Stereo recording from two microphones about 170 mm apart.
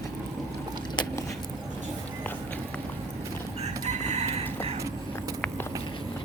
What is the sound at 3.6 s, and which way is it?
Chicken, 40° right (ahead or behind).